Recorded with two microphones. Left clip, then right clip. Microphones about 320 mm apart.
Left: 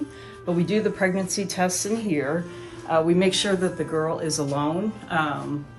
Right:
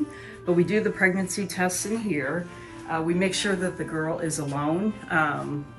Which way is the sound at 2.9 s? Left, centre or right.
Left.